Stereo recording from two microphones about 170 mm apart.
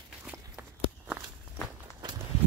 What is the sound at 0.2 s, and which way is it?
Walk, 10° right (ahead or behind).